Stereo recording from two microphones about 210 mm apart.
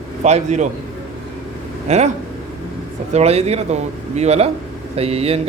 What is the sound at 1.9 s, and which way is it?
Speech, 30° right (ahead or behind).